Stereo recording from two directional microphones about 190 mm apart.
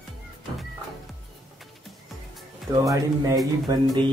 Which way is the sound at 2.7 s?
20° right (ahead or behind).